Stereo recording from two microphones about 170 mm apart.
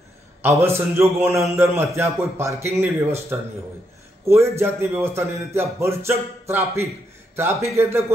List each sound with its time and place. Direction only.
0.4 s speech: 15° right (ahead or behind)